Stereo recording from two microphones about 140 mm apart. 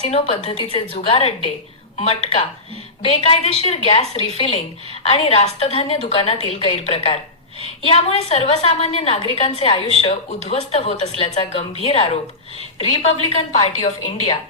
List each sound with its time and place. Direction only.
0.0 s a woman's voice: 45° left (ahead or behind)